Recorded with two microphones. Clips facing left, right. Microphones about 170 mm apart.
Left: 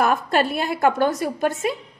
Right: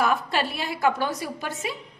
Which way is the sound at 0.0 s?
50° left (ahead or behind).